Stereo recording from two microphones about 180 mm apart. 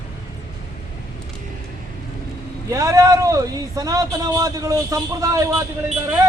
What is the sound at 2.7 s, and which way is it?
A man's voice, 15° right (ahead or behind).